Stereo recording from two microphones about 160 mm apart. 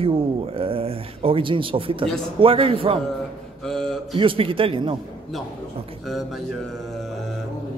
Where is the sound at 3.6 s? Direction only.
5° left (ahead or behind).